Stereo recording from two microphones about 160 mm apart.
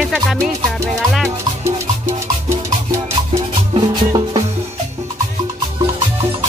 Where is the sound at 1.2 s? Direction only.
15° right (ahead or behind).